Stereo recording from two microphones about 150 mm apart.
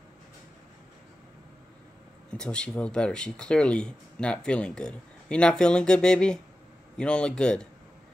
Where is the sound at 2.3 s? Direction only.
5° left (ahead or behind).